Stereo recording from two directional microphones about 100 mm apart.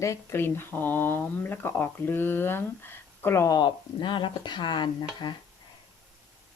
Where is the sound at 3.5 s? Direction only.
50° left (ahead or behind).